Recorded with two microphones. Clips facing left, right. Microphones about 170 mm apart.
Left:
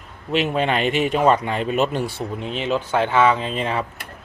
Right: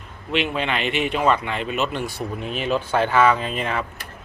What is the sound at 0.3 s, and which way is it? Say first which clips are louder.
Speech: left 3 dB; 40° left (ahead or behind).